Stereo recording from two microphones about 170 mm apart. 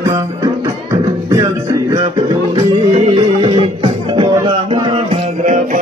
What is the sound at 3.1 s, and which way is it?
Music, 30° right (ahead or behind).